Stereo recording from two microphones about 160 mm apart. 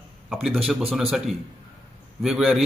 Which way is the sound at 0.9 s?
Centre (ahead or behind).